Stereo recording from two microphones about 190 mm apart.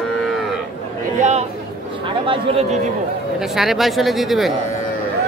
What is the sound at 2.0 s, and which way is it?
Speech, 25° right (ahead or behind).